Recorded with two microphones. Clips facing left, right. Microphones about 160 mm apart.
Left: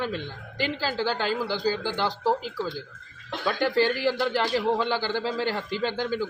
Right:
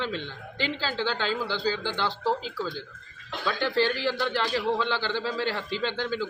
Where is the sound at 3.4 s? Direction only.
45° left (ahead or behind).